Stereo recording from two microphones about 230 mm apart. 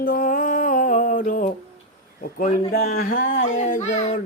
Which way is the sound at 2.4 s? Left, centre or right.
Left.